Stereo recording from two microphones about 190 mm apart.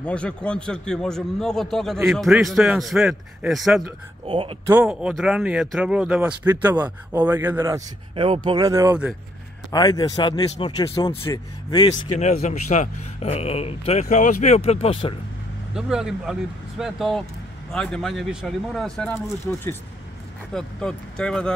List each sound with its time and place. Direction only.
0.0 s a man's voice: 5° left (ahead or behind)
4.3 s speech: 30° right (ahead or behind)
4.6 s a man's voice: 5° right (ahead or behind)
9.7 s speech: 20° left (ahead or behind)
12.2 s speech: 35° left (ahead or behind)
15.7 s a man's voice: 5° right (ahead or behind)
18.9 s a man's voice: 10° left (ahead or behind)